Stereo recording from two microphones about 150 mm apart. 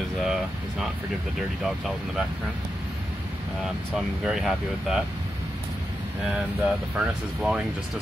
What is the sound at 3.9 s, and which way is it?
Speech, 5° right (ahead or behind).